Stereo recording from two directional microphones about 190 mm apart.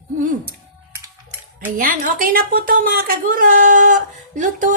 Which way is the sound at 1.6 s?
45° right (ahead or behind).